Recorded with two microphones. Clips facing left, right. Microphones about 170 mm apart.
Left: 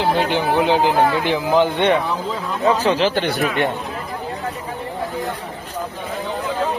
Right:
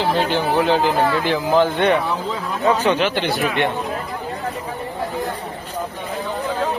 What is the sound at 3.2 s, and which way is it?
Speech, 45° left (ahead or behind).